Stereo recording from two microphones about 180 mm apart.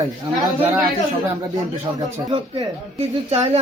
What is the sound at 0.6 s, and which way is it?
Speech, 10° right (ahead or behind).